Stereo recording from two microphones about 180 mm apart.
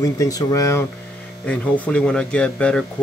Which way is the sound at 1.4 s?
5° left (ahead or behind).